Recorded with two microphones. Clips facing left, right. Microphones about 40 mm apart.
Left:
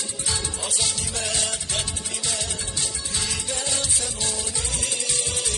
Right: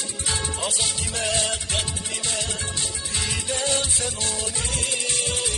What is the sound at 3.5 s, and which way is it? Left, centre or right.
Music, right.